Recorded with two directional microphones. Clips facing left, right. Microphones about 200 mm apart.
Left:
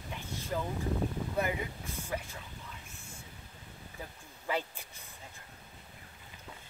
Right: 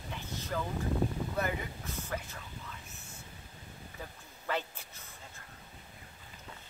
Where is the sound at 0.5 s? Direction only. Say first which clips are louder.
Left 1 dB; 15° left (ahead or behind).